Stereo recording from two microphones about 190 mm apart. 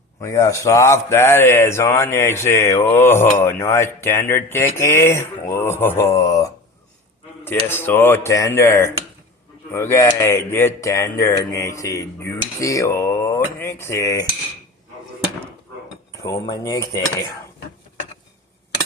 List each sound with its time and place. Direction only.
0.2 s speech: 15° left (ahead or behind)
16.2 s speech: 15° left (ahead or behind)